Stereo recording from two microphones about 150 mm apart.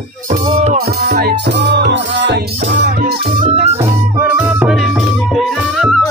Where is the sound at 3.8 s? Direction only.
10° right (ahead or behind).